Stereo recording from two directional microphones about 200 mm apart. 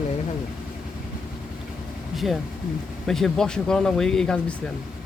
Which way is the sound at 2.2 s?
Centre (ahead or behind).